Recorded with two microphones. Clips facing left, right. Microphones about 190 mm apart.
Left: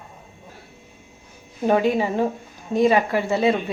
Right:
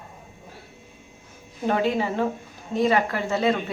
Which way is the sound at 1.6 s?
15° left (ahead or behind).